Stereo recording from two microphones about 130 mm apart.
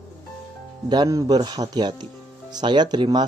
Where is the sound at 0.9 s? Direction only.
30° right (ahead or behind).